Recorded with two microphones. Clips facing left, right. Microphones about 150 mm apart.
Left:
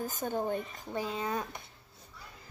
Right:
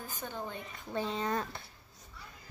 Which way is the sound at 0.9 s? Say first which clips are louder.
Even; 10° left (ahead or behind).